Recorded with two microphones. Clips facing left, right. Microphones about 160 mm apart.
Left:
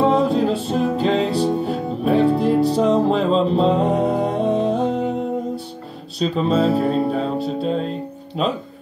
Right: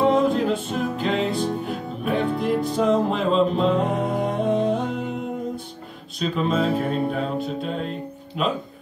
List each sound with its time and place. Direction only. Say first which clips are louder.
0.0 s music: left 2 dB; 35° left (ahead or behind)
6.1 s music: left 4 dB; 35° left (ahead or behind)